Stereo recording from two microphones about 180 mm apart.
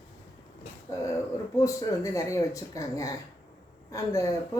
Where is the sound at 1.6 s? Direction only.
15° left (ahead or behind).